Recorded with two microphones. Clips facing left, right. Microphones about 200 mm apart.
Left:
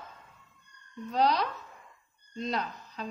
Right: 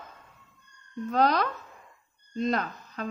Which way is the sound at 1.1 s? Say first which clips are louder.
Right 2 dB; 50° right (ahead or behind).